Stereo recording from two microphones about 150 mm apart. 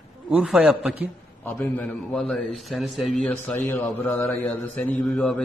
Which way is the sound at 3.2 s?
10° left (ahead or behind).